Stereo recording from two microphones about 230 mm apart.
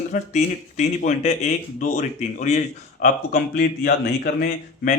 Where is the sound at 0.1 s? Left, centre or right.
Left.